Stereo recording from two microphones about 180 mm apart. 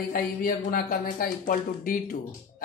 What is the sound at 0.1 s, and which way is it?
Speech, 50° left (ahead or behind).